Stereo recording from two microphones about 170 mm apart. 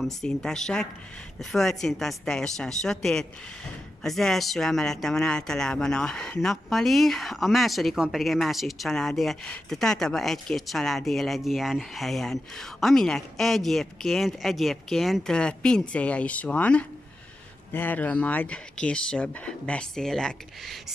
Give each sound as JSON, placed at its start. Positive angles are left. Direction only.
{"t": 0.0, "sound": "a woman's voice", "side_deg": 5}